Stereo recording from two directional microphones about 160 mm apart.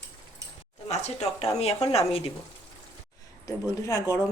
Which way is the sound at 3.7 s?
20° left (ahead or behind).